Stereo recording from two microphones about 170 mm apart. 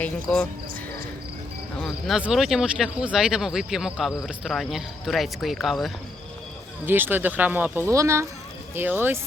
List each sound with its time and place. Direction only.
0.0 s speech: 5° left (ahead or behind)
1.8 s speech: centre (ahead or behind)
6.8 s speech: 10° right (ahead or behind)